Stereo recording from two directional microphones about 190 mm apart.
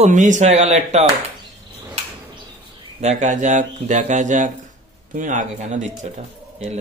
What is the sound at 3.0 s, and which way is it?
Speech, 35° right (ahead or behind).